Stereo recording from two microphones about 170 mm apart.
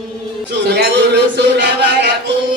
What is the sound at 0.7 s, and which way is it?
A man's voice, 80° right.